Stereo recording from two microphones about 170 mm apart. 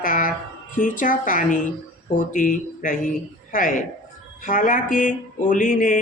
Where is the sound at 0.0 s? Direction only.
55° left (ahead or behind).